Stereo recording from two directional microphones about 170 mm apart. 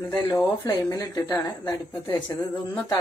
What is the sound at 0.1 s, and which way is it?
Speech, 20° left (ahead or behind).